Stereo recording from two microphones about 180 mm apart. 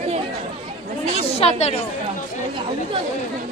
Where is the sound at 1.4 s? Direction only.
35° left (ahead or behind).